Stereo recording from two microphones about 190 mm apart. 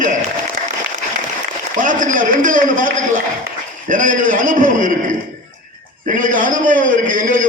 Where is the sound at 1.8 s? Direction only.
45° right (ahead or behind).